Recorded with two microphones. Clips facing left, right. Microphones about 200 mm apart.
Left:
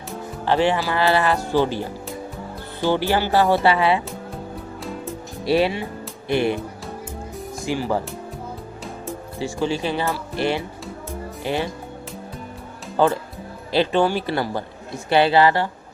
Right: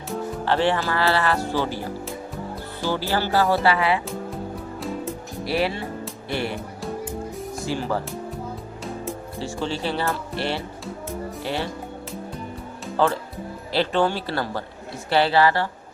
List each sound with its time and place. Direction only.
0.4 s speech: 15° left (ahead or behind)
2.9 s speech: 20° left (ahead or behind)
5.5 s speech: 20° left (ahead or behind)
7.6 s speech: 15° left (ahead or behind)
9.4 s speech: 15° left (ahead or behind)
13.0 s speech: 15° left (ahead or behind)